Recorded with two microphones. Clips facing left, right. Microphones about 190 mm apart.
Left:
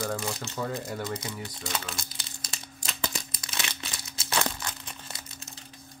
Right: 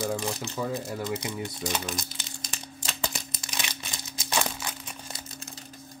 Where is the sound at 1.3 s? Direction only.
20° right (ahead or behind).